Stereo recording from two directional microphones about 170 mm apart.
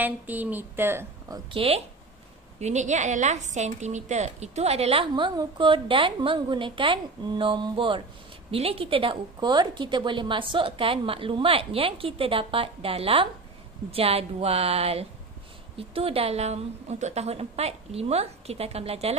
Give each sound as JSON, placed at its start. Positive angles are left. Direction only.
{"t": 0.0, "sound": "a woman's voice", "side_deg": -10}
{"t": 1.5, "sound": "a woman's voice", "side_deg": -35}